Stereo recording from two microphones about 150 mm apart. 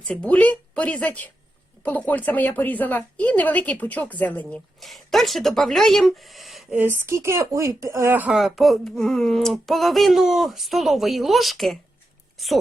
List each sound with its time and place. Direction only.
0.1 s speech: 5° left (ahead or behind)
6.7 s speech: 15° right (ahead or behind)
8.4 s speech: centre (ahead or behind)